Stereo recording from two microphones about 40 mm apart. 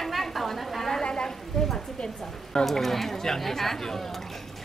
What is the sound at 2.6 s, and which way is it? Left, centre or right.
Speech, centre.